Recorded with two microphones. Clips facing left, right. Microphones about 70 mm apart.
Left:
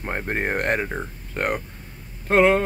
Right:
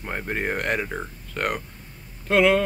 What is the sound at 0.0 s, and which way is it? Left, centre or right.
Speech, left.